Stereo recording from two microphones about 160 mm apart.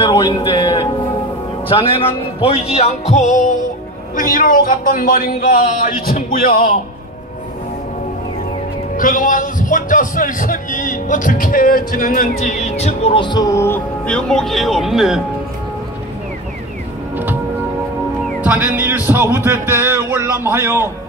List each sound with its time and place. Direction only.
0.0 s a man's voice: 30° left (ahead or behind); by 6.7 s 70° left (ahead or behind)
8.9 s a man's voice: 55° left (ahead or behind); by 15.2 s centre (ahead or behind)
18.4 s speech: 10° right (ahead or behind)